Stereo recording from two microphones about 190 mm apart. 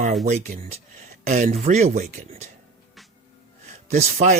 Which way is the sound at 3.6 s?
35° right (ahead or behind).